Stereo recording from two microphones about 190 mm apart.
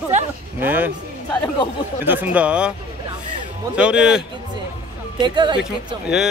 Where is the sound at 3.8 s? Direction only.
5° right (ahead or behind).